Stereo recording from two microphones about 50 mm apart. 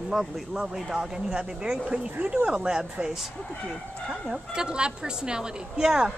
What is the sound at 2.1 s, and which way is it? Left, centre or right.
Speech, right.